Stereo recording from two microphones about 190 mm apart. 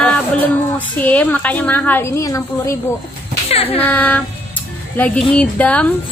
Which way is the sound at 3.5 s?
30° left (ahead or behind).